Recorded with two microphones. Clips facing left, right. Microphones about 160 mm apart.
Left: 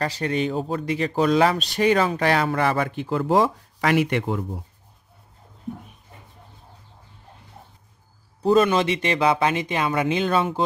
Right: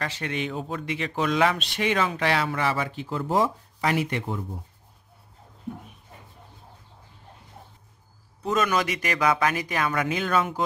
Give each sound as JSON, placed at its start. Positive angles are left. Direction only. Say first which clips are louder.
{"t": 0.0, "sound": "speech", "louder": "left 6 dB", "side_deg": 35}
{"t": 8.4, "sound": "speech", "louder": "left 7 dB", "side_deg": 30}